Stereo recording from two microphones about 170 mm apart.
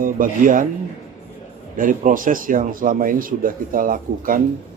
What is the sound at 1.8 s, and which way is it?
Speech, 55° right (ahead or behind).